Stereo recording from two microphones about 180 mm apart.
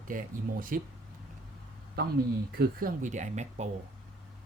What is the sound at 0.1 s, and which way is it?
Speech, 50° right (ahead or behind).